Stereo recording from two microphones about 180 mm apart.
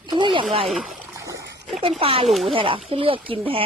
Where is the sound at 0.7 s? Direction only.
5° right (ahead or behind).